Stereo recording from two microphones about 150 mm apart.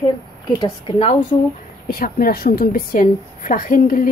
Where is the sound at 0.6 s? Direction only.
40° left (ahead or behind).